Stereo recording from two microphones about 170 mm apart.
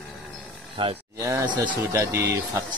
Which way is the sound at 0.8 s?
30° right (ahead or behind).